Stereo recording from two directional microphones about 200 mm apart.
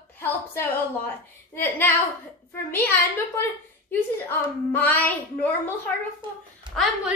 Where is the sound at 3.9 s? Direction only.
10° left (ahead or behind).